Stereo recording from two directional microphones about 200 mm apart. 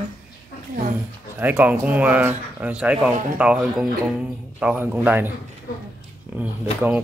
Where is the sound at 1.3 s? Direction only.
10° right (ahead or behind).